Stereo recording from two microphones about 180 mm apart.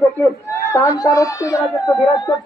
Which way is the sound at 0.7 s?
20° left (ahead or behind).